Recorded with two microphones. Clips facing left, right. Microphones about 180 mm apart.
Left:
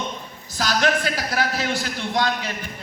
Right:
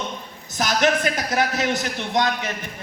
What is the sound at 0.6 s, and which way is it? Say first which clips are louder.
A man's voice: right 2 dB; 20° right (ahead or behind).